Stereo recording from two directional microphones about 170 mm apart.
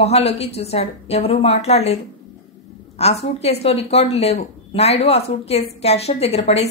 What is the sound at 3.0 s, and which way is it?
Speech, 35° left (ahead or behind).